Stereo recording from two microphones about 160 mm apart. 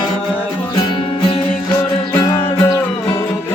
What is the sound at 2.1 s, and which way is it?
Music, 25° left (ahead or behind).